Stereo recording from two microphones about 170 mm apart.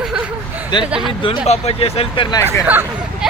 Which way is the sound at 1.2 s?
35° left (ahead or behind).